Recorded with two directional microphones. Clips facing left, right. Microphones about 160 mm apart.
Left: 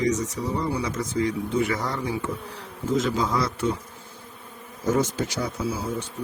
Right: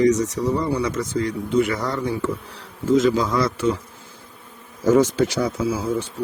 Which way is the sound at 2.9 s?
90° right.